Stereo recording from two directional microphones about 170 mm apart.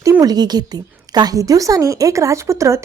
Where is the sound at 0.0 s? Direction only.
20° right (ahead or behind).